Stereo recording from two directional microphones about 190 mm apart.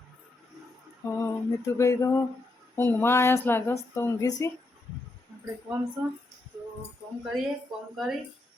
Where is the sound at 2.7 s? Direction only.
10° left (ahead or behind).